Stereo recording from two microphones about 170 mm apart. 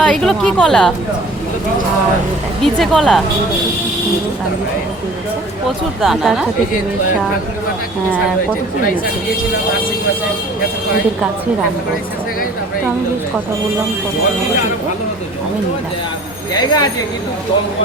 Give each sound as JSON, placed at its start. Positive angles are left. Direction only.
{"t": 0.0, "sound": "a woman's voice", "side_deg": 5}
{"t": 2.6, "sound": "a woman's voice", "side_deg": 0}
{"t": 6.0, "sound": "a woman's voice", "side_deg": 0}
{"t": 16.6, "sound": "speech", "side_deg": 25}